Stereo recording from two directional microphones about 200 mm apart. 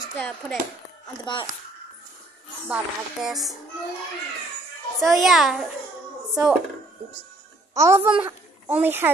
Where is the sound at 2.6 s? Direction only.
5° right (ahead or behind).